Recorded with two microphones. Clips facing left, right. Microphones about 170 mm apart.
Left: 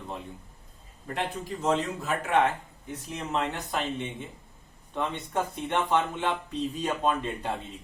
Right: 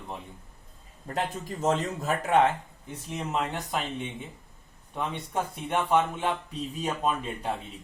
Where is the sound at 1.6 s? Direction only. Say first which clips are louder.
Right 1 dB; 40° right (ahead or behind).